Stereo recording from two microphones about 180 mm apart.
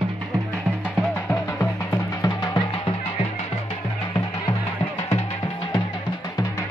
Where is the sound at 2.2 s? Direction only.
20° left (ahead or behind).